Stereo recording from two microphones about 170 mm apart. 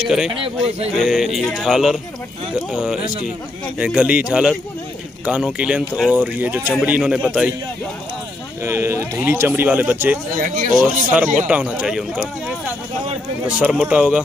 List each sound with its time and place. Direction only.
0.8 s a man's voice: centre (ahead or behind)
8.6 s speech: 15° right (ahead or behind)
10.3 s speech: 50° right (ahead or behind)
10.7 s speech: 5° right (ahead or behind)